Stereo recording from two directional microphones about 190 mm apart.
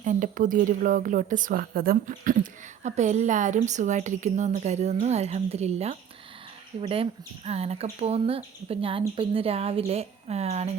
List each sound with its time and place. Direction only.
0.0 s a woman's voice: 40° right (ahead or behind)